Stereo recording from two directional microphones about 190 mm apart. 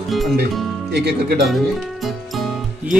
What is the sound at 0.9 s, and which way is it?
Speech, 60° right (ahead or behind).